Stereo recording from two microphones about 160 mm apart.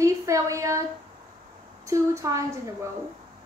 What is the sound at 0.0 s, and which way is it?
Speech, 20° right (ahead or behind).